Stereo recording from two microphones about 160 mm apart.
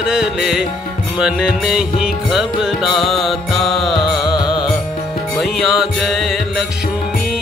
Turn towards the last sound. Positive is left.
turn(degrees=0)  # may be behind; listen again after turning